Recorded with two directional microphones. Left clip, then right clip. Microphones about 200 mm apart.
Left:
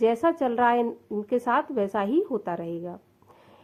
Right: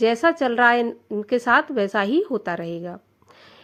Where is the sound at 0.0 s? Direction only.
30° right (ahead or behind).